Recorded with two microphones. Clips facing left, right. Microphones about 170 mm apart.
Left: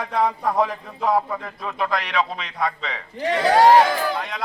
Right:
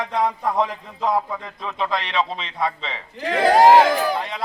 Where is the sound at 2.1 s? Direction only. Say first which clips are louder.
Even; 25° right (ahead or behind).